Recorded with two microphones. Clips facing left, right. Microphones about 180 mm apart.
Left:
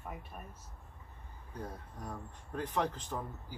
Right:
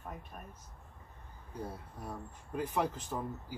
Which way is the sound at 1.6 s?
10° right (ahead or behind).